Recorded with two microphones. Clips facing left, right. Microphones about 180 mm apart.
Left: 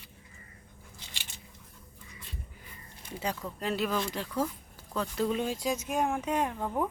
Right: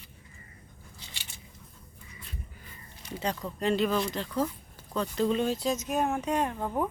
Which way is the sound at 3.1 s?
10° left (ahead or behind).